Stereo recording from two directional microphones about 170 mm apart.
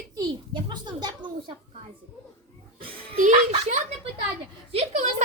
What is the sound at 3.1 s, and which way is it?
Speech, 50° right (ahead or behind).